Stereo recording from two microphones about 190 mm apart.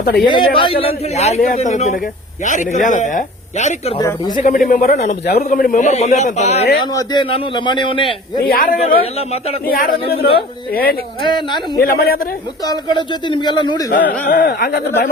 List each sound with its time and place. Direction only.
0.3 s a man's voice: 25° left (ahead or behind)
3.9 s a man's voice: 20° left (ahead or behind)
4.4 s speech: 45° left (ahead or behind)
6.9 s a man's voice: 25° left (ahead or behind)
8.4 s speech: 50° left (ahead or behind)
9.0 s speech: 30° left (ahead or behind)
9.6 s speech: 50° left (ahead or behind)
11.2 s a man's voice: 25° left (ahead or behind)
11.8 s speech: 55° left (ahead or behind)
12.6 s a man's voice: 20° left (ahead or behind)
14.3 s speech: 55° left (ahead or behind)